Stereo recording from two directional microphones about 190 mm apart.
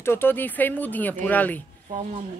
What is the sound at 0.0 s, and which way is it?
Speech, 10° left (ahead or behind).